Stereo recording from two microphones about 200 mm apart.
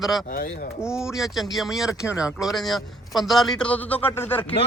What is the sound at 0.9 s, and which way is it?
A man's voice, 5° right (ahead or behind).